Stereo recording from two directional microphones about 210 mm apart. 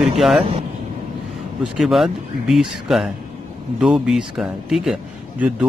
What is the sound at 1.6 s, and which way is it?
Speech, centre (ahead or behind).